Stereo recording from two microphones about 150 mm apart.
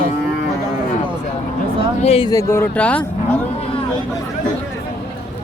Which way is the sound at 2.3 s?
20° left (ahead or behind).